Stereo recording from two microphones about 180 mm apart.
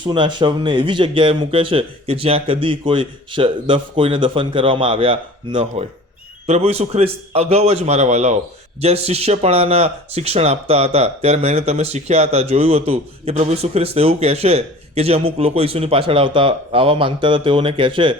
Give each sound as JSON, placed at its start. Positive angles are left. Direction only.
{"t": 0.0, "sound": "speech", "side_deg": -25}